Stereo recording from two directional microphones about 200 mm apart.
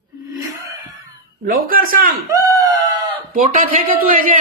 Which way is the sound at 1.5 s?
45° right (ahead or behind).